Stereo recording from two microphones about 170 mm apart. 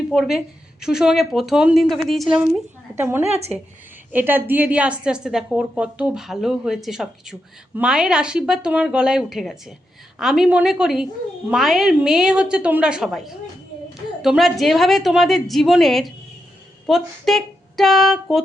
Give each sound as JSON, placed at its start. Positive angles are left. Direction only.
{"t": 0.1, "sound": "a woman's voice", "side_deg": 0}
{"t": 3.0, "sound": "a woman's voice", "side_deg": -15}
{"t": 3.2, "sound": "a woman's voice", "side_deg": -40}
{"t": 4.1, "sound": "a woman's voice", "side_deg": -10}